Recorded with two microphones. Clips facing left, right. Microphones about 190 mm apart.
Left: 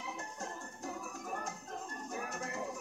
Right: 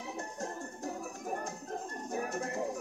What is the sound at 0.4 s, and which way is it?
Music, 40° right (ahead or behind).